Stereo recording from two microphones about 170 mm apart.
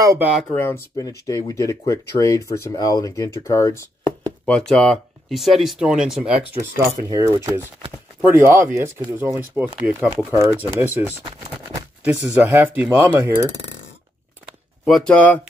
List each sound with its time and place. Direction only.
0.0 s speech: 20° right (ahead or behind)
1.2 s speech: 20° left (ahead or behind)
4.5 s speech: 5° left (ahead or behind)
7.1 s speech: 20° right (ahead or behind)
14.9 s speech: 5° left (ahead or behind)